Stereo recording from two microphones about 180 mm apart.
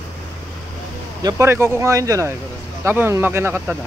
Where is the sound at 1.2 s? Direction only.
20° right (ahead or behind).